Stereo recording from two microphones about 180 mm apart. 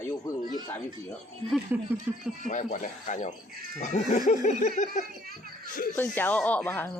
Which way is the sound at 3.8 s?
40° left (ahead or behind).